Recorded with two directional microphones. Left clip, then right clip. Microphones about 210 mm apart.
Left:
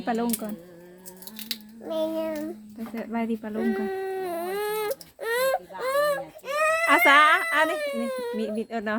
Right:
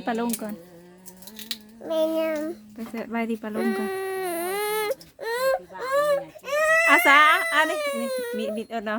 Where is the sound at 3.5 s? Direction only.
50° right (ahead or behind); by 5.0 s 30° right (ahead or behind).